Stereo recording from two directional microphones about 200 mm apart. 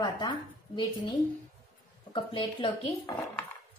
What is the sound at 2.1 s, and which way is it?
Speech, 25° left (ahead or behind).